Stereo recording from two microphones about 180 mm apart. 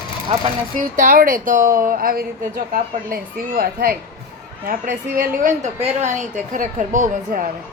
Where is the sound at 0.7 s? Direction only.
50° right (ahead or behind).